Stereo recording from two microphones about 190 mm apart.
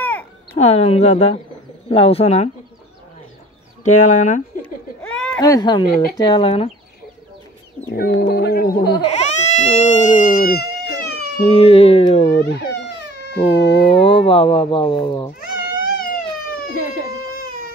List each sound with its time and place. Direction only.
0.0 s cat: 10° left (ahead or behind)
0.6 s speech: 35° left (ahead or behind)
3.8 s speech: 40° left (ahead or behind)
4.6 s laughter: 5° left (ahead or behind)
5.4 s speech: 20° left (ahead or behind)
7.9 s speech: 55° left (ahead or behind)
9.1 s baby cry: 35° left (ahead or behind)
11.4 s speech: 30° left (ahead or behind)
12.4 s cat: 60° left (ahead or behind)
14.2 s speech: 30° left (ahead or behind)
15.8 s a sound: 50° left (ahead or behind)
17.4 s music: 50° left (ahead or behind)